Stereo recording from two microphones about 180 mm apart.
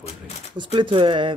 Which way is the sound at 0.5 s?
25° right (ahead or behind).